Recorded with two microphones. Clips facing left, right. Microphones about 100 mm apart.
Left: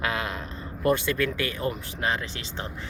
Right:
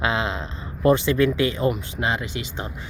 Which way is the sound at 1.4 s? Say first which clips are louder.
Right 7 dB; 20° right (ahead or behind).